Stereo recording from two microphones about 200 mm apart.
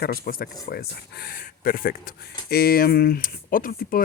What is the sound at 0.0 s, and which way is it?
Speech, 45° left (ahead or behind).